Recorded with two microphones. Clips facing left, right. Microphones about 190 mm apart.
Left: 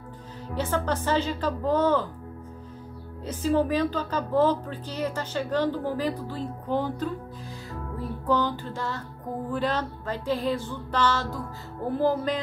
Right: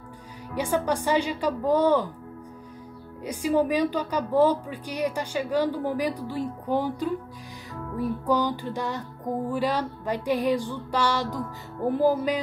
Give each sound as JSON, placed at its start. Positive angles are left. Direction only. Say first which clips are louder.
{"t": 0.6, "sound": "speech", "louder": "right 2 dB", "side_deg": -15}
{"t": 3.3, "sound": "speech", "louder": "right 1 dB", "side_deg": -15}
{"t": 8.3, "sound": "speech", "louder": "left 1 dB", "side_deg": -10}